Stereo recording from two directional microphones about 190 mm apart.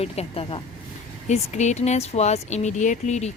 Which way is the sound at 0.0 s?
30° left (ahead or behind).